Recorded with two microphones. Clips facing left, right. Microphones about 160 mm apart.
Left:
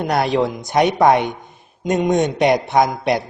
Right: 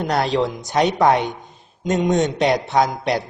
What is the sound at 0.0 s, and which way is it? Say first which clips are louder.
Speech: left 2 dB; 15° left (ahead or behind).